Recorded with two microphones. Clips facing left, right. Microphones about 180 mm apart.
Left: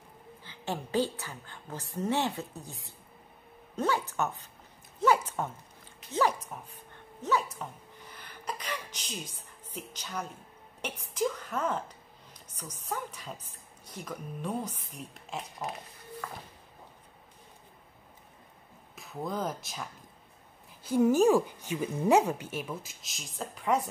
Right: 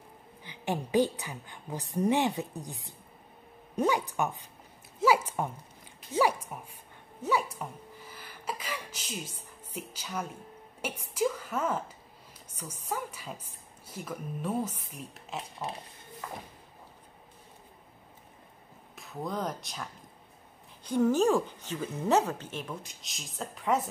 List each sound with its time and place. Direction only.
0.4 s a woman's voice: 15° right (ahead or behind)
7.2 s sneeze: 10° right (ahead or behind)
10.8 s a woman's voice: 10° right (ahead or behind)
18.9 s speech: centre (ahead or behind)